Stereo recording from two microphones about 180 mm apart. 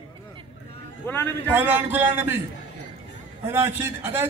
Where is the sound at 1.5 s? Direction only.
10° right (ahead or behind).